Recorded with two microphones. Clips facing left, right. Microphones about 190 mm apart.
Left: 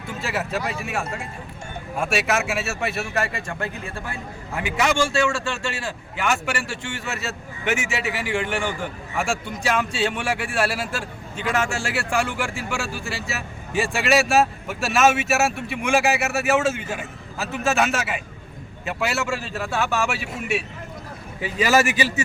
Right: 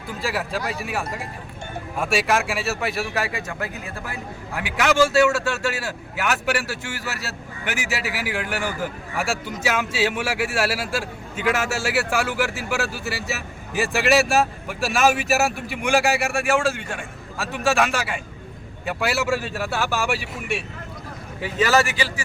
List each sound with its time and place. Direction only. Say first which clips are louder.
0.2 s a man's voice: even; centre (ahead or behind); by 22.2 s 20° left (ahead or behind)